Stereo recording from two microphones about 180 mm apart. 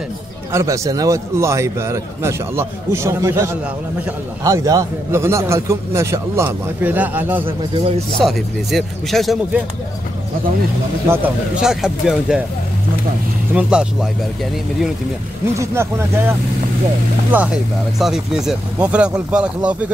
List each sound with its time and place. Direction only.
0.5 s a man's voice: 15° right (ahead or behind); by 9.6 s centre (ahead or behind)
11.1 s speech: 5° right (ahead or behind)
13.6 s speech: 5° right (ahead or behind)
15.5 s a man's voice: 15° right (ahead or behind)